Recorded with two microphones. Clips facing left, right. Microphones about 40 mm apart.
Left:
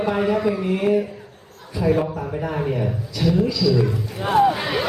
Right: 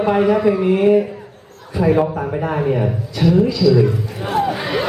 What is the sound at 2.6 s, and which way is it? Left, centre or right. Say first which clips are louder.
Speech: right 5 dB; centre.